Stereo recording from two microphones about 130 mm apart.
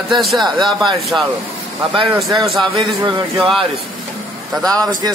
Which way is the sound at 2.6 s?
40° right (ahead or behind).